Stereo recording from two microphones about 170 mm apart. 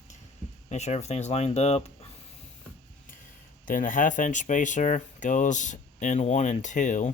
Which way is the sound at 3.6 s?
50° left (ahead or behind).